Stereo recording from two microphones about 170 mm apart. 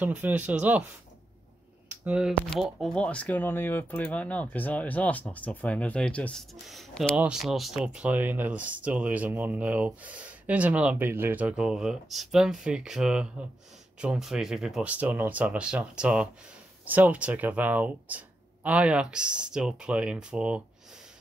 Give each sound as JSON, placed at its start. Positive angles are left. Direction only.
{"t": 0.0, "sound": "speech", "side_deg": -10}
{"t": 1.9, "sound": "a sound", "side_deg": -5}
{"t": 2.5, "sound": "speech", "side_deg": 0}